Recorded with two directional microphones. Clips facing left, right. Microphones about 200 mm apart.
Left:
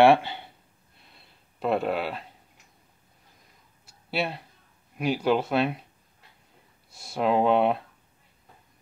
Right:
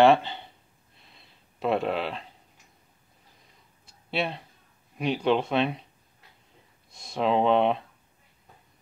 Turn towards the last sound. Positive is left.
turn(degrees=5)  # may be behind; listen again after turning